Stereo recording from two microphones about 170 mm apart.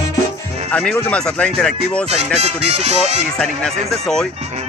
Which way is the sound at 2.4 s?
40° right (ahead or behind).